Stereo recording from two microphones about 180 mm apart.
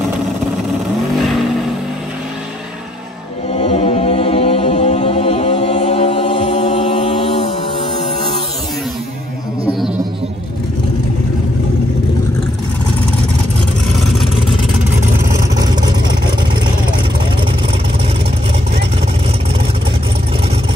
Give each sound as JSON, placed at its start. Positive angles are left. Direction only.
{"t": 3.5, "sound": "chant", "side_deg": 30}
{"t": 15.5, "sound": "vehicle", "side_deg": -20}